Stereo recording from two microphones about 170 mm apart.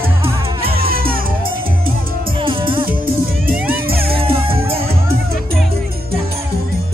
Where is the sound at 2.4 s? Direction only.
30° right (ahead or behind).